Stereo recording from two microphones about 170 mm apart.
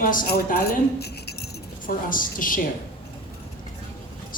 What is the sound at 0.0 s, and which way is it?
Speech, 55° left (ahead or behind).